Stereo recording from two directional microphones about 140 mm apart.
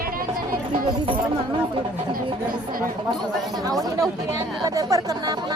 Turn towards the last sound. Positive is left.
turn(degrees=-25)  # may be behind; listen again after turning